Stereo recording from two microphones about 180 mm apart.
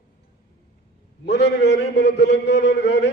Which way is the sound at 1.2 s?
70° left (ahead or behind).